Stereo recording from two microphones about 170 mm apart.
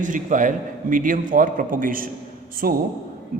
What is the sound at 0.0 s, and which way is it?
A man's voice, 50° right (ahead or behind).